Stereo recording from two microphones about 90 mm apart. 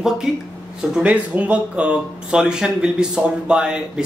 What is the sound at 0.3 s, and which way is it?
Speech, 5° right (ahead or behind).